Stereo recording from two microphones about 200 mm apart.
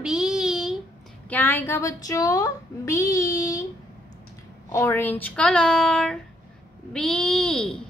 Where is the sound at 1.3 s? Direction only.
10° left (ahead or behind).